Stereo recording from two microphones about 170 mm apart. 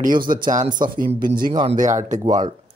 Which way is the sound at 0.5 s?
45° right (ahead or behind).